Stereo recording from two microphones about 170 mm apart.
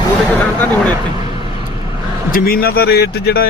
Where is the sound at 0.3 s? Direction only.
10° left (ahead or behind).